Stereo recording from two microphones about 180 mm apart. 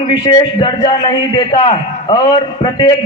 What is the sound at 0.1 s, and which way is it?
A man's voice, 25° left (ahead or behind).